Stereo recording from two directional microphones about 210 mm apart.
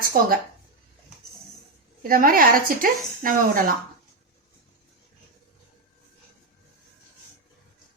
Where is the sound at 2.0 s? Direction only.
45° right (ahead or behind).